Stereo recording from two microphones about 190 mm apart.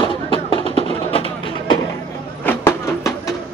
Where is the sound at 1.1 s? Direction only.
30° left (ahead or behind).